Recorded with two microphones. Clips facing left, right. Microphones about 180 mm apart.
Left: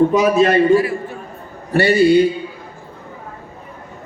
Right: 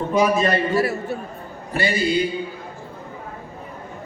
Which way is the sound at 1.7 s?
70° left (ahead or behind).